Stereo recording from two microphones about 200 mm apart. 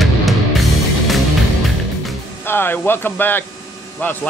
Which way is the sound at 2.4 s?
10° left (ahead or behind).